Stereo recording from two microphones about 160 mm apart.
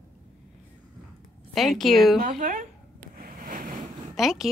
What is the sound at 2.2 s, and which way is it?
Speech, 55° right (ahead or behind).